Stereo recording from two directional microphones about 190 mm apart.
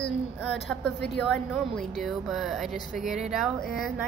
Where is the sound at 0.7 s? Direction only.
Centre (ahead or behind).